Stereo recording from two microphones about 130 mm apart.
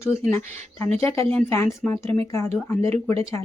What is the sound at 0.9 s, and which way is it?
Speech, 20° left (ahead or behind).